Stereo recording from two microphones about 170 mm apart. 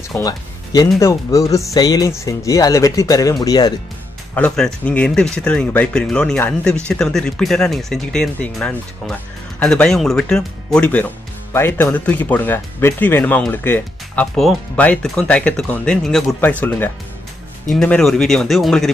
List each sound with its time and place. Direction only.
0.2 s music: 25° left (ahead or behind)
0.9 s speech: 20° left (ahead or behind)
4.4 s speech: 5° left (ahead or behind)